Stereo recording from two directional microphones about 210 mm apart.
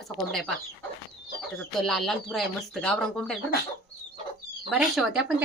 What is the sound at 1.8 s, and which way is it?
Speech, centre (ahead or behind).